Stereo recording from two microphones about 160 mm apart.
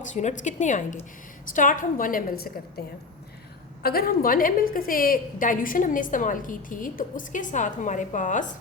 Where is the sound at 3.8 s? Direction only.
70° left (ahead or behind); by 8.4 s 50° left (ahead or behind).